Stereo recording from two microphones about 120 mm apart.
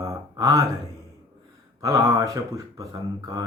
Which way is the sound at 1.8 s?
30° right (ahead or behind).